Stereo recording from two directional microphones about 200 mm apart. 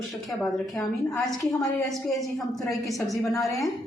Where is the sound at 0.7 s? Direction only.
15° left (ahead or behind).